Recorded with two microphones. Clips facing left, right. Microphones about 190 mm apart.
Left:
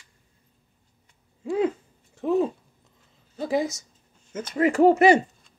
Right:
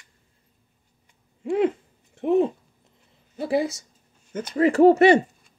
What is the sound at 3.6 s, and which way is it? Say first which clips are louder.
Speech: right 2 dB; 30° right (ahead or behind).